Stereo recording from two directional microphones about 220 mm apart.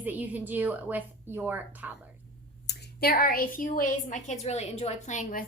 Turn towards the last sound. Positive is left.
turn(degrees=35)  # may be behind; listen again after turning